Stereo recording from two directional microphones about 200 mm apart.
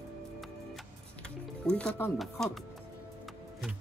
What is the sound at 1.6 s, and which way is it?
Speech, 5° left (ahead or behind).